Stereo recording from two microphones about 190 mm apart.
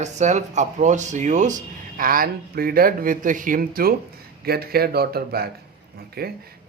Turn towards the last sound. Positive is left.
turn(degrees=-55)  # may be behind; listen again after turning